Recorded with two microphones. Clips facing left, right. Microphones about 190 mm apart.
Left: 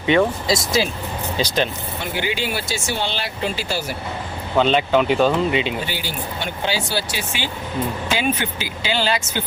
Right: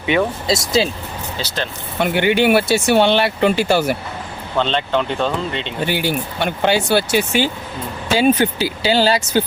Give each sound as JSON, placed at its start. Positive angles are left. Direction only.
{"t": 0.4, "sound": "speech", "side_deg": -25}
{"t": 1.4, "sound": "speech", "side_deg": 15}
{"t": 2.0, "sound": "speech", "side_deg": -60}
{"t": 4.5, "sound": "speech", "side_deg": 10}
{"t": 5.9, "sound": "speech", "side_deg": -60}
{"t": 8.1, "sound": "speech", "side_deg": -35}